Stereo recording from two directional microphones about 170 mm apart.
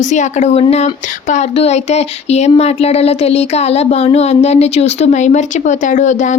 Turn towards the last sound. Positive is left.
turn(degrees=45)  # may be behind; listen again after turning